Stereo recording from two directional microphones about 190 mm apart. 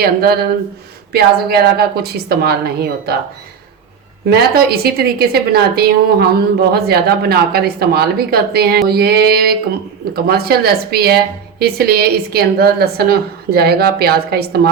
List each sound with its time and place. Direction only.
0.0 s a woman's voice: 55° right (ahead or behind)
4.3 s a woman's voice: 55° right (ahead or behind)